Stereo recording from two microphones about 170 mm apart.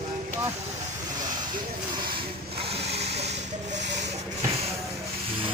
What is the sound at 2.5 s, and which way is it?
Vehicle, 35° right (ahead or behind).